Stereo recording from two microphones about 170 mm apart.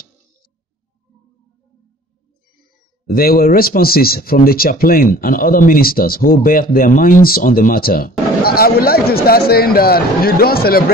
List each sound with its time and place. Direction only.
3.1 s speech: 60° left (ahead or behind)